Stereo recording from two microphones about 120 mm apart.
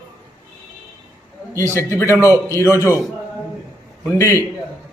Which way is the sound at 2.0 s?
25° left (ahead or behind).